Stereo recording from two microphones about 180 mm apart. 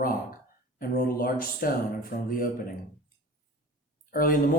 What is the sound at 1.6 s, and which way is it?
Speech, 50° left (ahead or behind).